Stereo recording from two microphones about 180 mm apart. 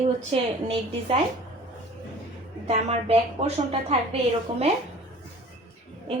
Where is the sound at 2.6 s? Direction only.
35° right (ahead or behind).